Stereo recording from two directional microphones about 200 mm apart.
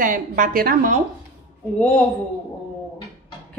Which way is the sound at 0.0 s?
45° right (ahead or behind).